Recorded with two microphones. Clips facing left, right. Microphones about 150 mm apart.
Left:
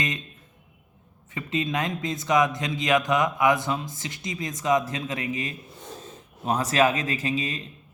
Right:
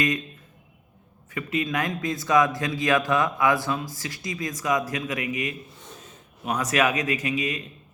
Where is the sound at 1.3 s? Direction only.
25° left (ahead or behind).